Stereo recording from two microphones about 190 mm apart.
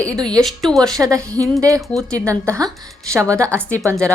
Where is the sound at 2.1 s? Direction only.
15° right (ahead or behind).